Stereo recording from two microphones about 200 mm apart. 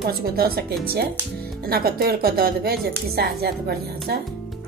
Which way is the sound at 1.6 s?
50° right (ahead or behind).